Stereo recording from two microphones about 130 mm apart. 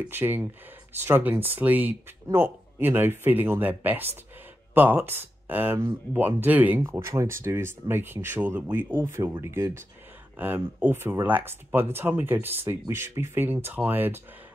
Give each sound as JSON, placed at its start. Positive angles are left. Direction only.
{"t": 0.1, "sound": "speech", "side_deg": -15}